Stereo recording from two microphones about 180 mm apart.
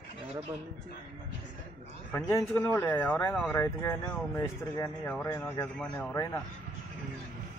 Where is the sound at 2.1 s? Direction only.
15° left (ahead or behind).